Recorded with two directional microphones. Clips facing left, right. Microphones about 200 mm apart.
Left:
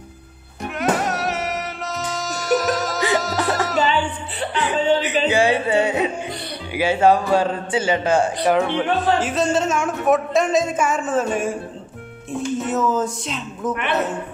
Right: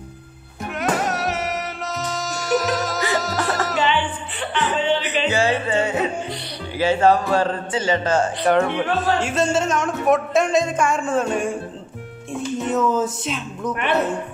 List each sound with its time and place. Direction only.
0.7 s music: centre (ahead or behind)
4.7 s music: 40° left (ahead or behind)
5.3 s music: 15° left (ahead or behind)
6.7 s a man's voice: 10° left (ahead or behind)
8.5 s speech: centre (ahead or behind)